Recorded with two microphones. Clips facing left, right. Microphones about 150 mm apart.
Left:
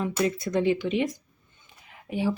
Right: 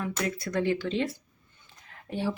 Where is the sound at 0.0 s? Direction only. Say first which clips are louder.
Left 5 dB; 20° left (ahead or behind).